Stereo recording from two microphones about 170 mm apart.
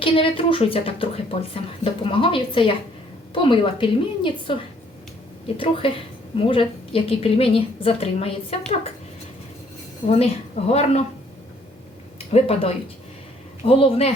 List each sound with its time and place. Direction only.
0.0 s a woman's voice: 30° left (ahead or behind)
5.5 s a woman's voice: 30° left (ahead or behind)
10.1 s a woman's voice: 35° left (ahead or behind)
12.3 s a woman's voice: 35° left (ahead or behind)